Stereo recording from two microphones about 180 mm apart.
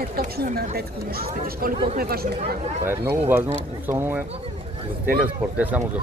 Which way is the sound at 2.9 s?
10° right (ahead or behind).